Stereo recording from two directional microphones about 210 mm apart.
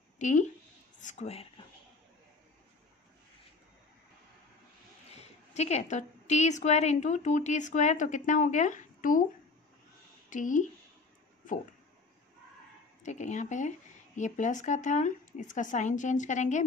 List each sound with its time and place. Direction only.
0.2 s a woman's voice: 35° left (ahead or behind)
5.1 s a woman's voice: 30° left (ahead or behind)
10.3 s a woman's voice: 35° left (ahead or behind)
11.4 s a sound: 40° left (ahead or behind)
13.0 s a woman's voice: 35° left (ahead or behind)